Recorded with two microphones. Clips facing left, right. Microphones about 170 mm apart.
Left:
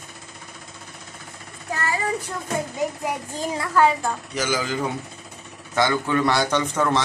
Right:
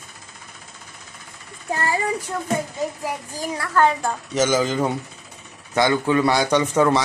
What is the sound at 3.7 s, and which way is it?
Speech, 5° left (ahead or behind).